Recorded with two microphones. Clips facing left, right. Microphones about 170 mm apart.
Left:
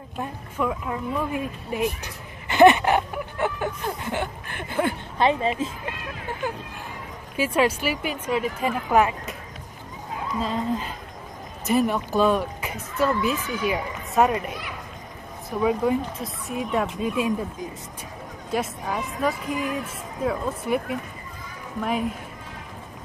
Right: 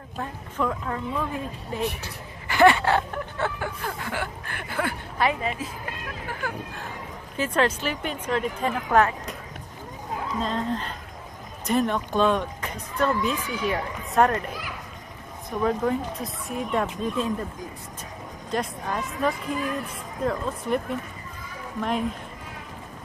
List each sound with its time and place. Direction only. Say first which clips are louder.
0.2 s speech: left 1 dB; 10° left (ahead or behind)
7.3 s speech: left 2 dB; 10° left (ahead or behind)
10.4 s speech: left 2 dB; 5° left (ahead or behind)
18.5 s speech: left 1 dB; 5° left (ahead or behind)